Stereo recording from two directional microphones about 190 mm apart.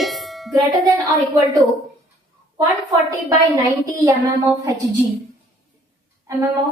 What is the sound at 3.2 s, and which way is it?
Speech, 20° right (ahead or behind).